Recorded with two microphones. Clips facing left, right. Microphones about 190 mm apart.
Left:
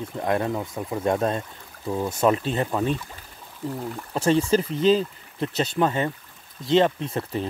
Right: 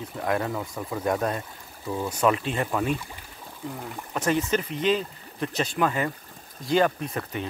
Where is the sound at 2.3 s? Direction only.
35° left (ahead or behind).